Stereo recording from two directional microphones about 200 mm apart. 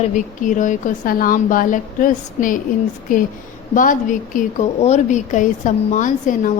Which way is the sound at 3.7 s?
40° left (ahead or behind).